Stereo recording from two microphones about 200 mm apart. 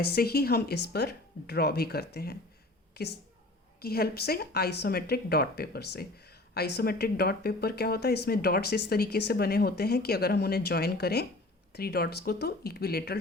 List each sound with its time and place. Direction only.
0.0 s a woman's voice: 50° left (ahead or behind)